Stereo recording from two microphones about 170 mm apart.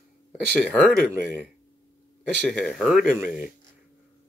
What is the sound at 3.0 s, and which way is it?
Speech, 55° left (ahead or behind).